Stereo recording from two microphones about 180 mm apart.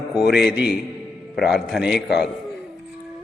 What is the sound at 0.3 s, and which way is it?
A man's voice, 5° right (ahead or behind).